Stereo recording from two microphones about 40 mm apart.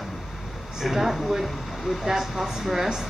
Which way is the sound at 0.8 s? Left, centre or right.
Centre.